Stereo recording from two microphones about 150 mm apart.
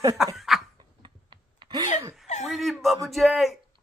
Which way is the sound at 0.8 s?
30° right (ahead or behind).